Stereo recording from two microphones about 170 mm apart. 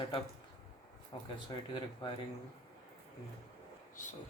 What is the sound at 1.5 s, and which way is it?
Speech, 25° left (ahead or behind).